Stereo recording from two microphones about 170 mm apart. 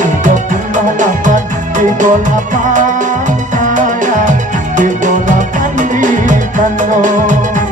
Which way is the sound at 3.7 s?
50° right (ahead or behind).